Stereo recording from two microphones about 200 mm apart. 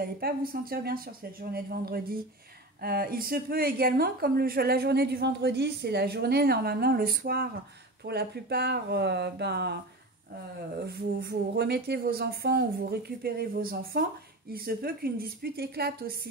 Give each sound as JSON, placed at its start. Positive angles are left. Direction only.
{"t": 0.0, "sound": "speech", "side_deg": -50}
{"t": 10.9, "sound": "speech", "side_deg": -55}